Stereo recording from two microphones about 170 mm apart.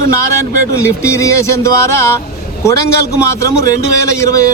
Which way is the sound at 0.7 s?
15° left (ahead or behind).